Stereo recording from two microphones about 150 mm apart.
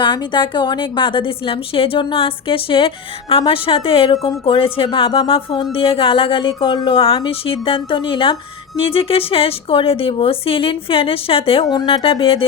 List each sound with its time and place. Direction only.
0.0 s a woman's voice: 30° left (ahead or behind)